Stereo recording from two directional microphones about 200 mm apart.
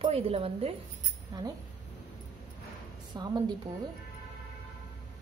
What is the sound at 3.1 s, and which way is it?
Speech, 20° right (ahead or behind).